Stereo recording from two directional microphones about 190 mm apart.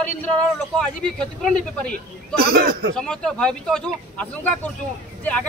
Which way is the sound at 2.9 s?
5° left (ahead or behind).